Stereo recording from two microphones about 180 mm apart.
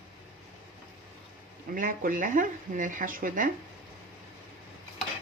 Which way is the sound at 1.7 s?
50° right (ahead or behind).